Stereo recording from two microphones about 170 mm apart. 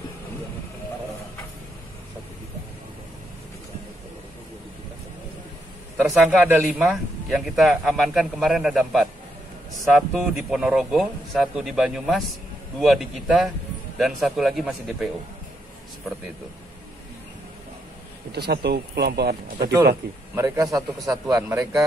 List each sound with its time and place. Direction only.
6.2 s a man's voice: 5° right (ahead or behind)
18.3 s speech: 75° right (ahead or behind)
20.3 s a man's voice: 20° right (ahead or behind)